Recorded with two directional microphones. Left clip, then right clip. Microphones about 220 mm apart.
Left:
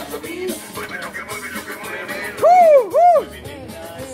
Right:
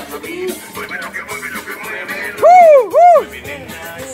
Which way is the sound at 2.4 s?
30° right (ahead or behind).